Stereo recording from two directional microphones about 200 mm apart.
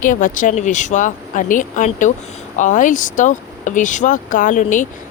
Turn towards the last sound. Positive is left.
turn(degrees=40)  # may be behind; listen again after turning